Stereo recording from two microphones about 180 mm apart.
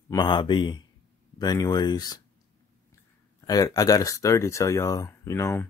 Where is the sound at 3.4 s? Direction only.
20° left (ahead or behind).